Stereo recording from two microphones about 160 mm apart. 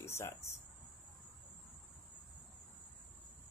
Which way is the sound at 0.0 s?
15° left (ahead or behind).